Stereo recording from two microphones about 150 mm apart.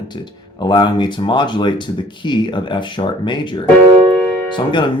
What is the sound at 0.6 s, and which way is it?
Speech, 30° left (ahead or behind).